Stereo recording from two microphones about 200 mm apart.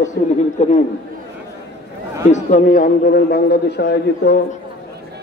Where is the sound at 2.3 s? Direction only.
40° left (ahead or behind); by 4.3 s 55° left (ahead or behind).